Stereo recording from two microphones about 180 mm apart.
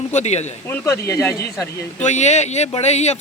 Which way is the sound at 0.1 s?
40° left (ahead or behind).